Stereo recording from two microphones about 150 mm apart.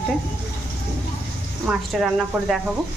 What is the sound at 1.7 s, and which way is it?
Speech, 5° right (ahead or behind).